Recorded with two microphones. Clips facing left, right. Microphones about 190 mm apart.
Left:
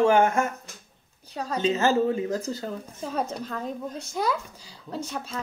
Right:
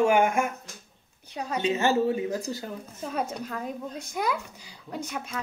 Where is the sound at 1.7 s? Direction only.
20° right (ahead or behind).